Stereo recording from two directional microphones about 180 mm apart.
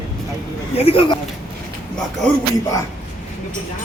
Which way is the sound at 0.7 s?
30° left (ahead or behind).